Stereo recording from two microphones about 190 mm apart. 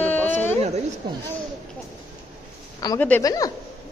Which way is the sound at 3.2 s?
20° left (ahead or behind).